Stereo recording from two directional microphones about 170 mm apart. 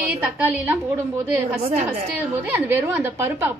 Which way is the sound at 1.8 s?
10° right (ahead or behind).